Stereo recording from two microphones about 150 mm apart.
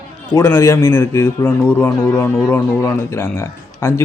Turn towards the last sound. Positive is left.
turn(degrees=15)  # may be behind; listen again after turning